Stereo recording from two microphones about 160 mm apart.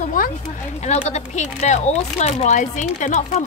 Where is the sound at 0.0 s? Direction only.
60° left (ahead or behind).